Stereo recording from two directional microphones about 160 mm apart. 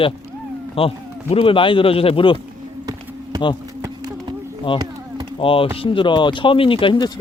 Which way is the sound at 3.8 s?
25° right (ahead or behind).